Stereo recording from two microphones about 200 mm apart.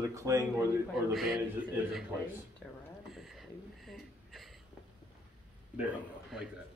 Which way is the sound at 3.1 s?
Centre (ahead or behind).